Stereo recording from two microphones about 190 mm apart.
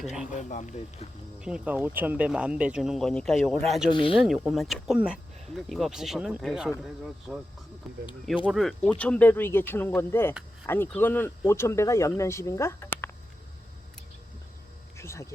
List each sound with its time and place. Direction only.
0.0 s speech: 5° right (ahead or behind)
0.3 s speech: 40° left (ahead or behind)
1.4 s speech: 5° right (ahead or behind)
3.8 s speech: 25° left (ahead or behind)
4.1 s speech: 5° right (ahead or behind)
14.9 s cricket: 15° left (ahead or behind)